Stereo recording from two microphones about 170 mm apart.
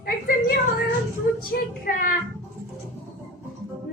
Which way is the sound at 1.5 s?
55° left (ahead or behind).